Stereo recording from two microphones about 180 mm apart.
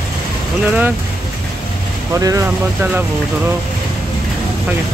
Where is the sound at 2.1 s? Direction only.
15° right (ahead or behind).